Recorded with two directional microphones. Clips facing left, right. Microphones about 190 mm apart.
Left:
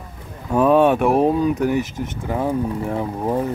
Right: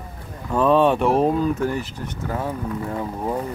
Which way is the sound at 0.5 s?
10° left (ahead or behind).